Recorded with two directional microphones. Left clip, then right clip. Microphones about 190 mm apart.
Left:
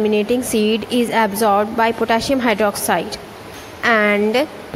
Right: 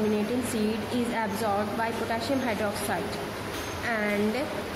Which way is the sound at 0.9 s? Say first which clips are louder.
Left 14 dB; 45° left (ahead or behind).